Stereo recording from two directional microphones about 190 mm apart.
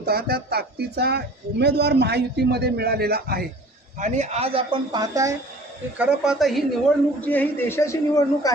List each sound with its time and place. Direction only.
0.0 s speech: 55° right (ahead or behind)
3.9 s speech: 40° right (ahead or behind); by 5.3 s 20° right (ahead or behind)
6.0 s a woman's voice: centre (ahead or behind); by 8.5 s 20° left (ahead or behind)